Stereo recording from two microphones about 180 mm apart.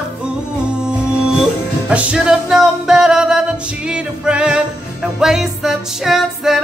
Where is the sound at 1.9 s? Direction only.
5° right (ahead or behind).